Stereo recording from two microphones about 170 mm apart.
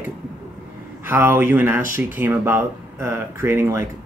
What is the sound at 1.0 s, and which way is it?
Speech, 15° right (ahead or behind).